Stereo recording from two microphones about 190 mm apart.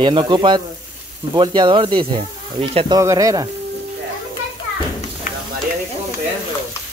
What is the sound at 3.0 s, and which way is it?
Speech, 15° right (ahead or behind).